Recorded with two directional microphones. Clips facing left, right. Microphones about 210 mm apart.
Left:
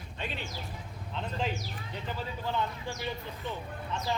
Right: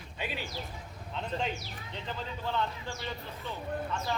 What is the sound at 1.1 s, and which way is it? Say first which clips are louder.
A man's voice: even; 5° left (ahead or behind).